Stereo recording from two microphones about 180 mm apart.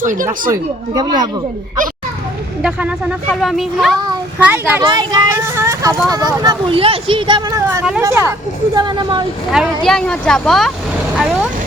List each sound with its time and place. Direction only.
0.0 s speech: 50° right (ahead or behind)
0.5 s speech: 20° right (ahead or behind)
2.6 s speech: 5° right (ahead or behind)
4.8 s speech: 25° right (ahead or behind)
9.5 s speech: centre (ahead or behind)